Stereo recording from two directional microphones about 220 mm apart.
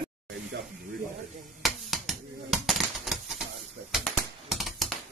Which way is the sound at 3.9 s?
Centre (ahead or behind).